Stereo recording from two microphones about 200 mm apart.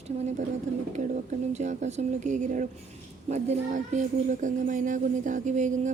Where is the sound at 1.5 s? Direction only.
35° right (ahead or behind).